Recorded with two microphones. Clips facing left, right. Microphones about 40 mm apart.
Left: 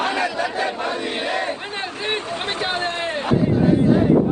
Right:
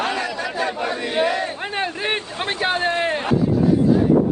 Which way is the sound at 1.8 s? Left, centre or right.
Right.